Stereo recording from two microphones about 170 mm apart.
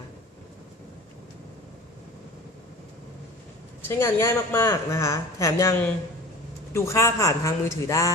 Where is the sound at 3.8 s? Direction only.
15° left (ahead or behind).